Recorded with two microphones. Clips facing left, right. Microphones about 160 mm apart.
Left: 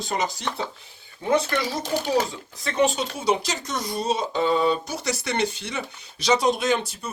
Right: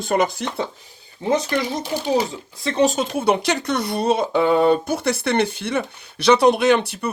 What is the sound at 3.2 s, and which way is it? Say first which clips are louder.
Speech: right 5 dB; 60° right (ahead or behind).